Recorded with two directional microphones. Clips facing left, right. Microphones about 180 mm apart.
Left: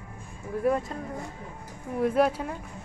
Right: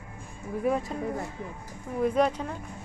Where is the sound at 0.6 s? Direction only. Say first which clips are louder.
Left 2 dB; centre (ahead or behind).